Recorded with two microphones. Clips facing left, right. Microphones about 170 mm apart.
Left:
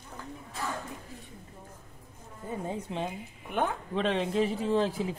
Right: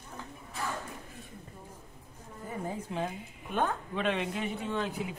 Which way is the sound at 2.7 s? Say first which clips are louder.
Even; 20° left (ahead or behind).